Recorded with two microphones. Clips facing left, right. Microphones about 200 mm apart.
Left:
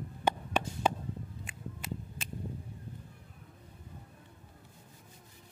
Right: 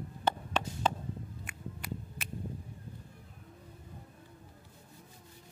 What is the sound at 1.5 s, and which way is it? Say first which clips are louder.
Music: even; 25° left (ahead or behind).